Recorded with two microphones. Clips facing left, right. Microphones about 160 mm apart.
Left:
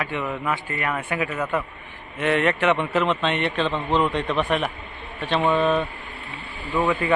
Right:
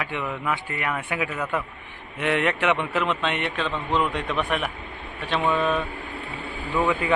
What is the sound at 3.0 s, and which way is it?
Speech, 25° left (ahead or behind).